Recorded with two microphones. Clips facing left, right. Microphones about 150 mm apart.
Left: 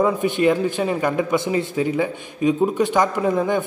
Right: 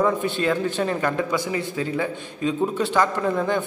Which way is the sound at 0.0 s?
15° left (ahead or behind).